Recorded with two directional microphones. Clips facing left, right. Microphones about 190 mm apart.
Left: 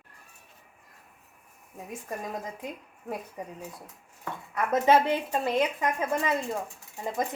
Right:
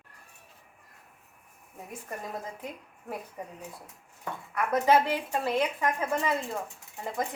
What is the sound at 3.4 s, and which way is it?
Speech, 15° left (ahead or behind).